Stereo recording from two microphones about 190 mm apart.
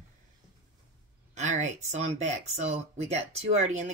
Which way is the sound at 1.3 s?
40° right (ahead or behind).